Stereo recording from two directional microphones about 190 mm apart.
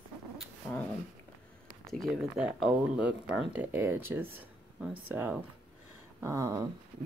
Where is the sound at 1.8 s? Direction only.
Centre (ahead or behind).